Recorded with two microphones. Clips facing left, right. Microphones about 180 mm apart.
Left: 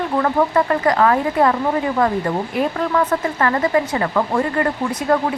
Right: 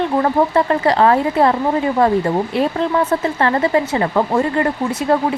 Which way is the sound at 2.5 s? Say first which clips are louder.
Even; 25° right (ahead or behind).